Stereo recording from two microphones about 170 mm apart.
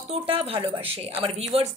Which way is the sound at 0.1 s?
35° right (ahead or behind).